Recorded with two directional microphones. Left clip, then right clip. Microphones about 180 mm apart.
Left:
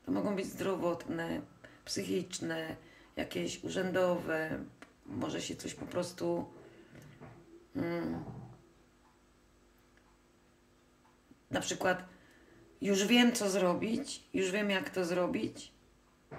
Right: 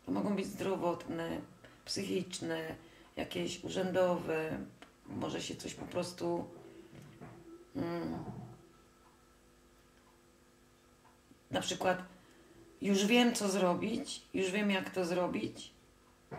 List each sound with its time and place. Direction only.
0.0 s speech: 20° left (ahead or behind)
7.7 s speech: 20° left (ahead or behind)
11.5 s speech: 20° left (ahead or behind)